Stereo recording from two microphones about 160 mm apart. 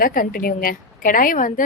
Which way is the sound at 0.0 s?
60° left (ahead or behind).